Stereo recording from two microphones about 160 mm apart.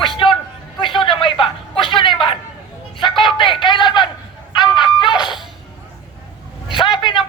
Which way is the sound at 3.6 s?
30° left (ahead or behind).